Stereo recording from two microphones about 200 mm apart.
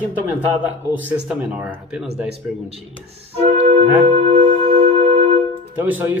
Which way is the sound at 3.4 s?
30° right (ahead or behind).